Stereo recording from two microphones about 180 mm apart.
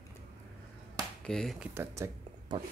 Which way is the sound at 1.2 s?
Centre (ahead or behind).